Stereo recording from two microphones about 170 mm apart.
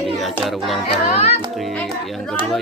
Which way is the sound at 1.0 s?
40° left (ahead or behind).